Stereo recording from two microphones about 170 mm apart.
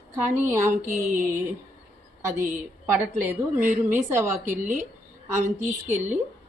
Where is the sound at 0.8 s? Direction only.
45° right (ahead or behind).